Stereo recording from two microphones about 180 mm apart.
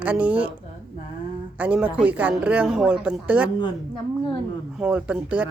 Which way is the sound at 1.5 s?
10° right (ahead or behind).